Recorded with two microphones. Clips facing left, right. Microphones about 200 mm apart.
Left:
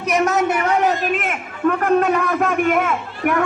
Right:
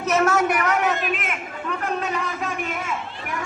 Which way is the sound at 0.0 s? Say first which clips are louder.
Left 2 dB; 15° left (ahead or behind).